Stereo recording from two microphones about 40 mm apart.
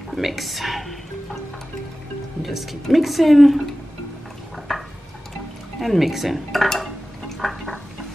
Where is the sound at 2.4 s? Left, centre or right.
Centre.